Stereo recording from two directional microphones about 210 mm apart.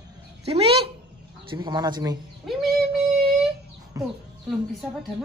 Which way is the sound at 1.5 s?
20° right (ahead or behind).